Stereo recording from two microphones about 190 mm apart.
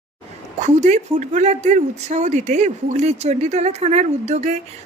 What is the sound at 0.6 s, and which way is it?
Speech, 35° right (ahead or behind).